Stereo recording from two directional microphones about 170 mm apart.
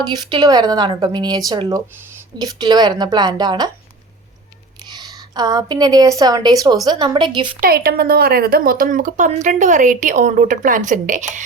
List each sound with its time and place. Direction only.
0.0 s a woman's voice: 25° right (ahead or behind)
4.9 s a woman's voice: 25° right (ahead or behind)
7.6 s speech: 65° right (ahead or behind); by 11.4 s 50° right (ahead or behind)